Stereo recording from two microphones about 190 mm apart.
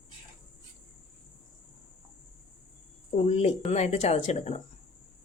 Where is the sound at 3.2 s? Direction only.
35° left (ahead or behind).